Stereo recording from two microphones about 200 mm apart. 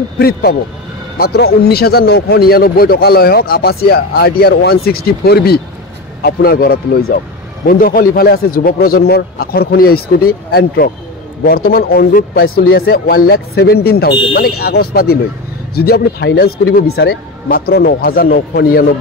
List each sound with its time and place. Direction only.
0.2 s a man's voice: 50° left (ahead or behind)